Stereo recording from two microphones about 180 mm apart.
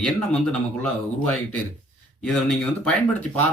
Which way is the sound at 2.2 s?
5° left (ahead or behind).